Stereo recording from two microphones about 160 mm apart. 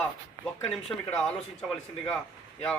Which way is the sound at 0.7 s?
5° left (ahead or behind).